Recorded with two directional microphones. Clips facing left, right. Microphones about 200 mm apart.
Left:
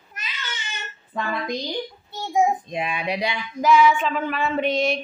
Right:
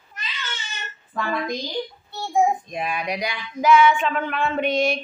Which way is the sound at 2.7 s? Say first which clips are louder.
Left 1 dB; 25° left (ahead or behind).